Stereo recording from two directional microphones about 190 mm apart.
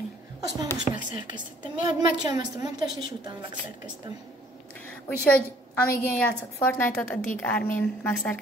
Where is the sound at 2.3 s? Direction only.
20° right (ahead or behind).